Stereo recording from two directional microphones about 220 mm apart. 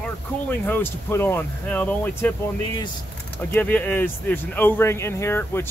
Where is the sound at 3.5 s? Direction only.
10° left (ahead or behind).